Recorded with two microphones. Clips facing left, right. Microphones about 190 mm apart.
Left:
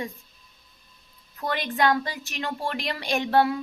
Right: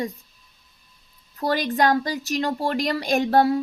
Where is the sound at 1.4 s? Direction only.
35° right (ahead or behind).